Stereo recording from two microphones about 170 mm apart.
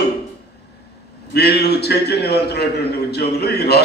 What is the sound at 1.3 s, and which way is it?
A man's voice, 75° left (ahead or behind).